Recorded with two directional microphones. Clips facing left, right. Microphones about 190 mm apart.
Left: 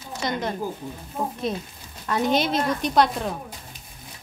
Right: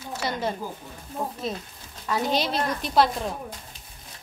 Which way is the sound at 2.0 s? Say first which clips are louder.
Left 3 dB; centre (ahead or behind).